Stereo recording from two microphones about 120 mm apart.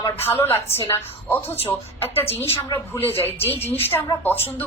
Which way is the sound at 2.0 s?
20° left (ahead or behind).